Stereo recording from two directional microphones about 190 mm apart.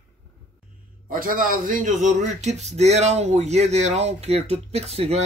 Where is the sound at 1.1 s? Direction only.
50° right (ahead or behind).